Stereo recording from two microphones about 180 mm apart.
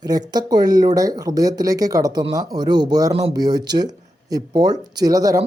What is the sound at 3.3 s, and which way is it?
Speech, 20° right (ahead or behind).